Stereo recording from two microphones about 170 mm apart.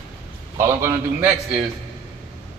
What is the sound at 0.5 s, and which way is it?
Speech, 15° right (ahead or behind).